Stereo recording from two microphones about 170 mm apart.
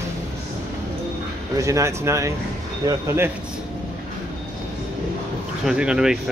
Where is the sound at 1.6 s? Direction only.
15° right (ahead or behind).